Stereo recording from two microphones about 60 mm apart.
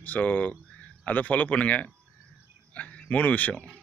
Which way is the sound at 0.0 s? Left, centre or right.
Left.